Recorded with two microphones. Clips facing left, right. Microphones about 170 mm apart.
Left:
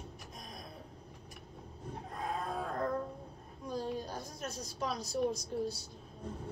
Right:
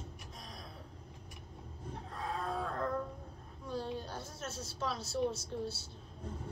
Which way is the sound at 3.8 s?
10° left (ahead or behind).